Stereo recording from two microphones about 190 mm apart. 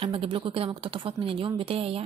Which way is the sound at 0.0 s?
30° right (ahead or behind).